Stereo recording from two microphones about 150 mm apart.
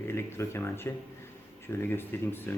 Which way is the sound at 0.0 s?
15° left (ahead or behind).